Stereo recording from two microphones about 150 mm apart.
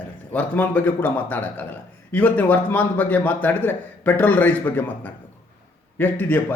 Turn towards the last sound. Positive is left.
turn(degrees=10)  # may be behind; listen again after turning